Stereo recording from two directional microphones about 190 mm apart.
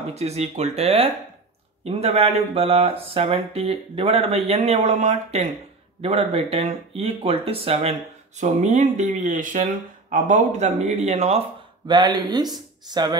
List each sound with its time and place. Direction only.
0.1 s speech: 35° right (ahead or behind)
11.9 s speech: 25° right (ahead or behind)